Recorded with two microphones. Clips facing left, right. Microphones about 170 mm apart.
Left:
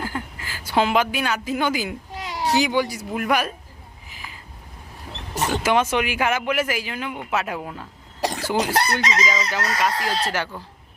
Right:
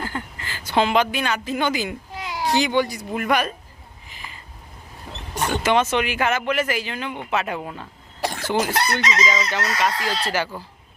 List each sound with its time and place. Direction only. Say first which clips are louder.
0.0 s a woman's voice: even; 5° left (ahead or behind)
4.1 s a sound: even; 5° left (ahead or behind)
5.3 s speech: even; centre (ahead or behind)
8.7 s chicken: left 1 dB; 35° left (ahead or behind)
9.2 s speech: right 1 dB; 5° left (ahead or behind)